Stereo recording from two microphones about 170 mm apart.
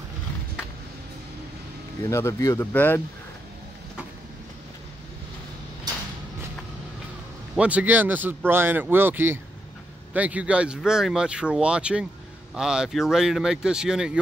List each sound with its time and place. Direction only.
2.0 s speech: 15° left (ahead or behind)
7.5 s speech: 10° right (ahead or behind)